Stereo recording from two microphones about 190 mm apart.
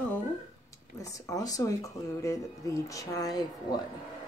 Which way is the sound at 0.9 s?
15° left (ahead or behind).